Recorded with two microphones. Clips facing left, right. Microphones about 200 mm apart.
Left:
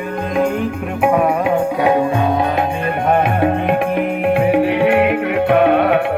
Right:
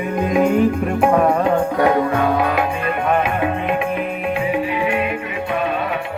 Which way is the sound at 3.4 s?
50° left (ahead or behind).